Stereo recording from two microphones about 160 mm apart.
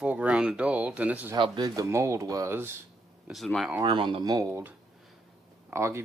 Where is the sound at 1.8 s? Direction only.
20° right (ahead or behind).